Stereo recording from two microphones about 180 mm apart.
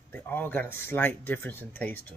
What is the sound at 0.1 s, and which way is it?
Speech, 10° left (ahead or behind).